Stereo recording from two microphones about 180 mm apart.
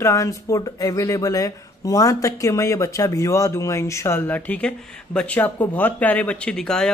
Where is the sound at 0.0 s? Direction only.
15° left (ahead or behind).